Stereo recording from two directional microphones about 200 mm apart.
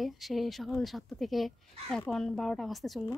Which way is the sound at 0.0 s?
Centre (ahead or behind).